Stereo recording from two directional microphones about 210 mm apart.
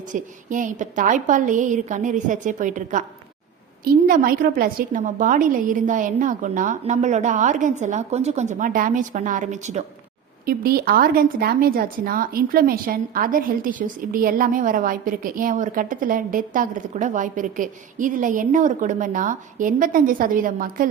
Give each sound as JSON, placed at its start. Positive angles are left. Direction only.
{"t": 0.1, "sound": "speech", "side_deg": -40}
{"t": 10.4, "sound": "speech", "side_deg": -45}